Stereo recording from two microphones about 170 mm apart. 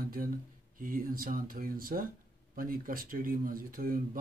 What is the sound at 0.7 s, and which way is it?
Speech, 55° right (ahead or behind).